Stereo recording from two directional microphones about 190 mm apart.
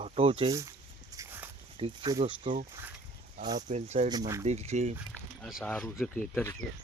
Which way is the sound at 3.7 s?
35° right (ahead or behind).